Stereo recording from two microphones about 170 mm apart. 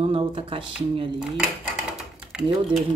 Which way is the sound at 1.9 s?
5° right (ahead or behind).